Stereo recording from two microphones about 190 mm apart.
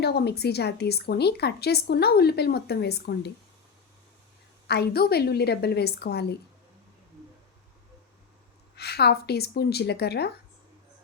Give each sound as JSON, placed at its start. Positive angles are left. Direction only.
{"t": 0.0, "sound": "a woman's voice", "side_deg": 55}
{"t": 4.7, "sound": "a woman's voice", "side_deg": 55}
{"t": 8.7, "sound": "a woman's voice", "side_deg": 60}